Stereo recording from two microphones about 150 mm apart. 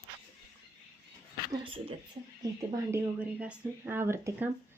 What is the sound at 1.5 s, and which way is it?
Speech, 35° right (ahead or behind).